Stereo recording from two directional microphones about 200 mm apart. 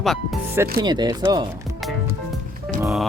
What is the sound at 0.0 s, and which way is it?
Speech, centre (ahead or behind).